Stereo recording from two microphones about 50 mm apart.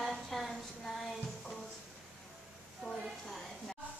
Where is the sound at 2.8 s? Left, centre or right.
Centre.